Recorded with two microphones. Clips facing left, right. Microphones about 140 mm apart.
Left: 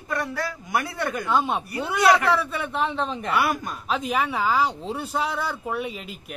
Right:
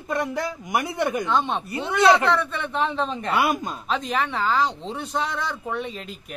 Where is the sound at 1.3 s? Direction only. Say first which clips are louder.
Even; 5° left (ahead or behind).